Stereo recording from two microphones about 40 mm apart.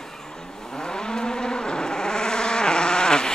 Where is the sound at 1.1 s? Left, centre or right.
Centre.